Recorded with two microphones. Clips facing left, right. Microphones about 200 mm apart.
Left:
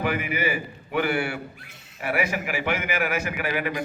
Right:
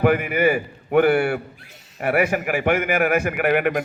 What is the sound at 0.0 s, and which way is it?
A man's voice, 55° right (ahead or behind).